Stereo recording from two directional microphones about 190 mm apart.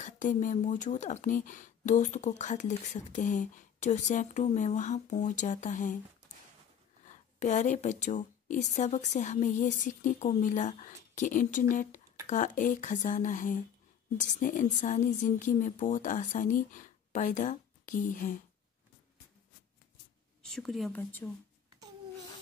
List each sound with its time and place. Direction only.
0.0 s speech: 40° left (ahead or behind)
7.3 s a woman's voice: 40° left (ahead or behind)
20.4 s speech: centre (ahead or behind)